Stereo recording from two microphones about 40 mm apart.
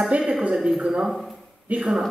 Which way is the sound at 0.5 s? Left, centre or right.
Centre.